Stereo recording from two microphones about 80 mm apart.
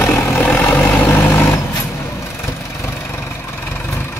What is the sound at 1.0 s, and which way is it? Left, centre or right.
Vehicle, left.